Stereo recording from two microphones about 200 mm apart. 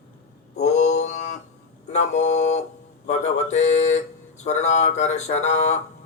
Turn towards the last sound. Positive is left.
turn(degrees=35)  # may be behind; listen again after turning